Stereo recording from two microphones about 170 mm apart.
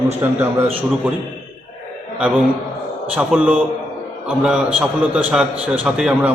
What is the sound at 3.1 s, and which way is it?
A man's voice, 10° right (ahead or behind).